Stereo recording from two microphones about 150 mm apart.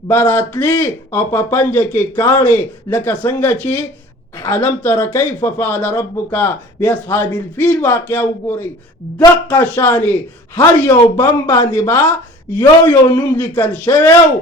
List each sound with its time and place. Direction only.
0.1 s speech: 15° left (ahead or behind)